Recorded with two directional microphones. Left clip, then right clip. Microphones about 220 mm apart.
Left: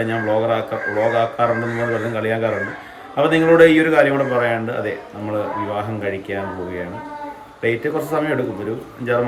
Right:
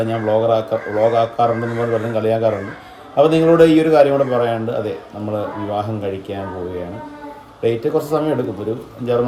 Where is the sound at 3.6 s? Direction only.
15° left (ahead or behind).